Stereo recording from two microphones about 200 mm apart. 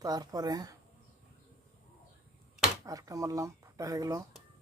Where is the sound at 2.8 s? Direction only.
15° right (ahead or behind).